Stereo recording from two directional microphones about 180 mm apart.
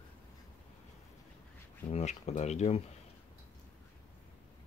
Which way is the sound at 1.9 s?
35° left (ahead or behind).